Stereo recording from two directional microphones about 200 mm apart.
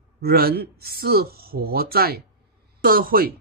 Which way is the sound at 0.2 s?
50° right (ahead or behind).